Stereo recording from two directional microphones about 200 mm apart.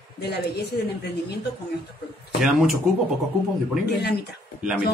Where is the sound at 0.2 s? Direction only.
55° left (ahead or behind).